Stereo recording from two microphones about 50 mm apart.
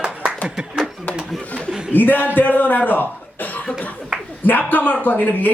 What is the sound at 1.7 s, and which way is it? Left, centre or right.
Chuckle, centre.